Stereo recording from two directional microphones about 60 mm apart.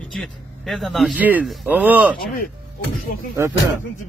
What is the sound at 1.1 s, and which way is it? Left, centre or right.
Speech, right.